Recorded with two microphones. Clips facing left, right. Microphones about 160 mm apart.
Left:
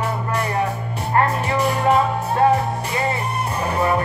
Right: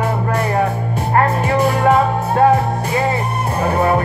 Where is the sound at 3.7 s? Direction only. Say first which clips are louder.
Right 3 dB; 35° right (ahead or behind).